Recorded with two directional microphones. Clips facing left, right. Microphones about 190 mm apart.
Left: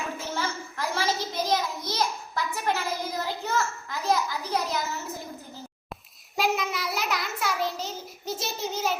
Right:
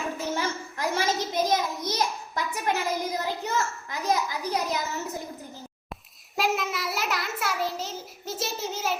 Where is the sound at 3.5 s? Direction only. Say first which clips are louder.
Even; 15° right (ahead or behind).